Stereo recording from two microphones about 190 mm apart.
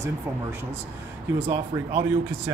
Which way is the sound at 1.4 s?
15° right (ahead or behind).